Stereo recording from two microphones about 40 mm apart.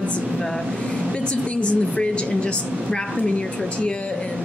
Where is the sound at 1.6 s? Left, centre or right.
Left.